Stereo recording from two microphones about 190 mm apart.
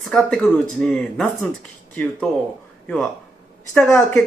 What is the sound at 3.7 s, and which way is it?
Speech, 10° left (ahead or behind).